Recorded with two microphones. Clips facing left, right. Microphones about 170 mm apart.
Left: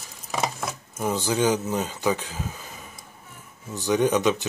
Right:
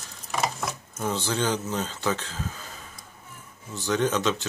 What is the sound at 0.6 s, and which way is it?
Speech, 5° left (ahead or behind).